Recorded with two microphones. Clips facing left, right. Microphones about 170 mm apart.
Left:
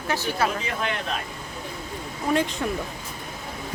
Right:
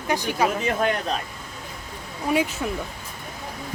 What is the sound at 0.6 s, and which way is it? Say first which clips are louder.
Speech: right 6 dB; 45° right (ahead or behind).